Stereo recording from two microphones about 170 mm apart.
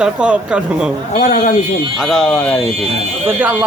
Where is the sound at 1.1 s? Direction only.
45° left (ahead or behind).